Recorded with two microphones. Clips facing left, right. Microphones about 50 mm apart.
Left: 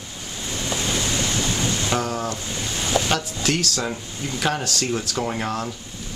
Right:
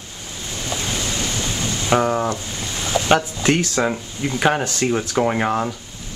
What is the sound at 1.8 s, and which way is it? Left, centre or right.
Ocean, right.